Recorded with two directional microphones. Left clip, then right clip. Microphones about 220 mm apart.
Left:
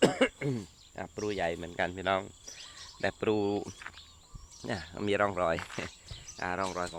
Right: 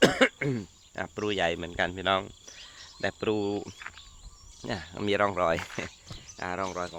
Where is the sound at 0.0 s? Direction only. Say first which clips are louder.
Right 4 dB; 25° right (ahead or behind).